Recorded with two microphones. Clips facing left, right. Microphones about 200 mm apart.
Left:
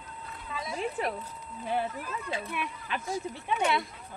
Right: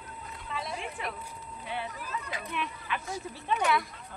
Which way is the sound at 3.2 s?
20° left (ahead or behind).